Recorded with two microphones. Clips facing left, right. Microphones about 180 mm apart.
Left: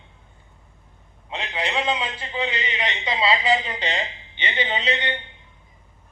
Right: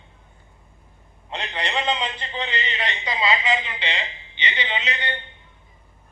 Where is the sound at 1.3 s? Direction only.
Centre (ahead or behind); by 4.8 s 50° left (ahead or behind).